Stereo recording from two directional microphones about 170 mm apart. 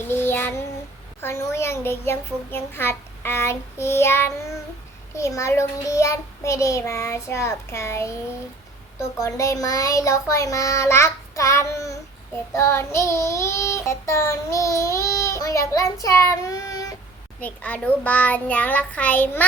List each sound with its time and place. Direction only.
0.1 s child singing: 15° left (ahead or behind)
9.2 s child singing: 15° left (ahead or behind)
17.4 s child singing: 10° left (ahead or behind)